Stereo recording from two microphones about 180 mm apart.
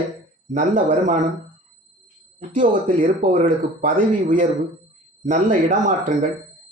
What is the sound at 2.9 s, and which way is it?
Speech, 45° right (ahead or behind).